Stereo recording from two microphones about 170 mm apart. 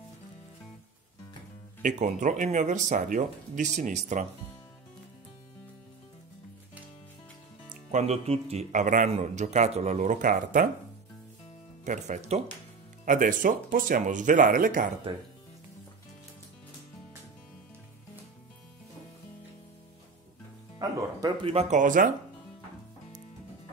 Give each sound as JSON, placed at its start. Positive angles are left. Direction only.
{"t": 1.8, "sound": "speech", "side_deg": -45}
{"t": 7.7, "sound": "speech", "side_deg": -45}
{"t": 11.8, "sound": "speech", "side_deg": -45}
{"t": 15.1, "sound": "speech", "side_deg": -25}
{"t": 20.8, "sound": "music", "side_deg": -20}
{"t": 21.5, "sound": "speech", "side_deg": -40}